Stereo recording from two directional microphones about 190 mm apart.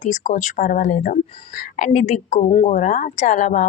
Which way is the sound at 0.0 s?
40° left (ahead or behind).